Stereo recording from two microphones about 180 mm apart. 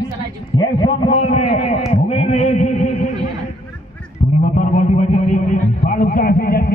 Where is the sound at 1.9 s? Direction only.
35° left (ahead or behind).